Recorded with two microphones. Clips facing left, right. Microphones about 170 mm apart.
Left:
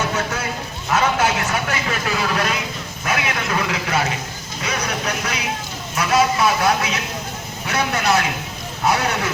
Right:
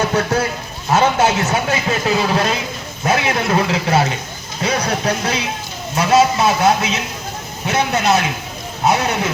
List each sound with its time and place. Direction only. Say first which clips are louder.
0.1 s a sound: right 7 dB; 35° right (ahead or behind)
0.9 s a man's voice: right 4 dB; 25° right (ahead or behind)
4.6 s music: right 6 dB; 30° right (ahead or behind)
6.0 s a man's voice: right 4 dB; 25° right (ahead or behind)